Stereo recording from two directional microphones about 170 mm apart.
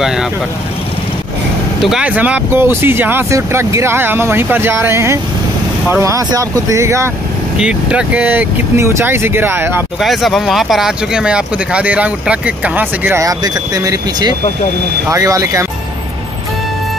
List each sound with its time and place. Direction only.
0.0 s speech: 5° right (ahead or behind)
1.8 s speech: 5° right (ahead or behind)
7.5 s speech: 5° right (ahead or behind)
9.9 s speech: centre (ahead or behind); by 15.6 s 20° right (ahead or behind)